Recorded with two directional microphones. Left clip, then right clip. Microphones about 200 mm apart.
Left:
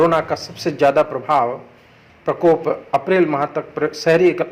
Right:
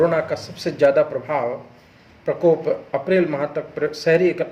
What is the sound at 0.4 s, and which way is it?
A man's voice, 20° left (ahead or behind).